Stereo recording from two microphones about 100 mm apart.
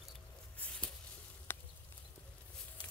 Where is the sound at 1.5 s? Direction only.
20° left (ahead or behind).